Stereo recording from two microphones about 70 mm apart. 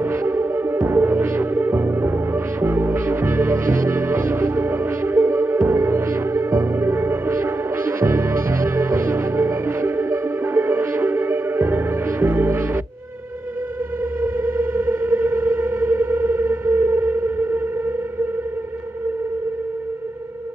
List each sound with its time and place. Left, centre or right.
0.0 s music: right
14.2 s music: right